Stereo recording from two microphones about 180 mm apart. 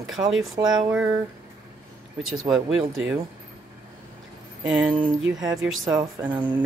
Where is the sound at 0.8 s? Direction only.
5° right (ahead or behind).